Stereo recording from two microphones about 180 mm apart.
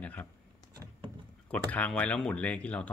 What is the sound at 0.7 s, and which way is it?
Vehicle, 20° right (ahead or behind).